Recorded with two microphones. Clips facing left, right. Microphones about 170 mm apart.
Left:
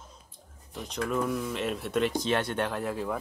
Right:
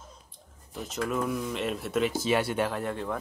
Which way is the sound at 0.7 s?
Centre (ahead or behind).